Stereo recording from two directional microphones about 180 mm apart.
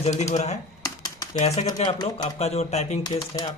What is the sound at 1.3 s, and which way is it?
Speech, 35° left (ahead or behind).